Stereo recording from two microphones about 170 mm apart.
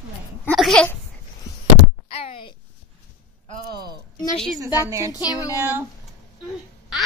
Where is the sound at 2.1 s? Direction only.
35° left (ahead or behind).